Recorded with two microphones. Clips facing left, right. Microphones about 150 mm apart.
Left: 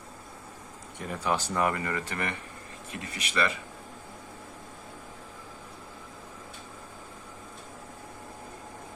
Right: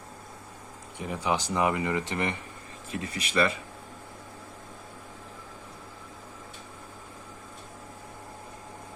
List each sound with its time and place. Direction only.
0.9 s speech: 15° right (ahead or behind)
2.9 s speech: 35° right (ahead or behind)